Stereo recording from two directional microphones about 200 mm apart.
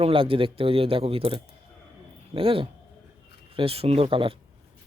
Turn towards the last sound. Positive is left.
turn(degrees=-25)  # may be behind; listen again after turning